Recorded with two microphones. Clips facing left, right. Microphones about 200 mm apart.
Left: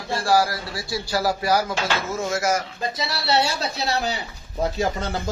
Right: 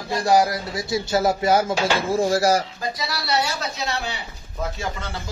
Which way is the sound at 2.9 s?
25° left (ahead or behind).